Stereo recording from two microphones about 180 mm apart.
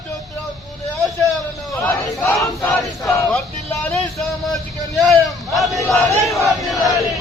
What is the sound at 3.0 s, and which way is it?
Vehicle, 15° left (ahead or behind).